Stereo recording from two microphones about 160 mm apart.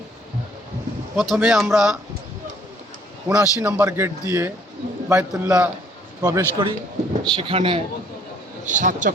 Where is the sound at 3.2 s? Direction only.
10° right (ahead or behind); by 7.8 s 35° right (ahead or behind).